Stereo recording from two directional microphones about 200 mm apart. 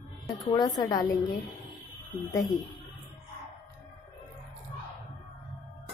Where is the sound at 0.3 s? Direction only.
15° left (ahead or behind).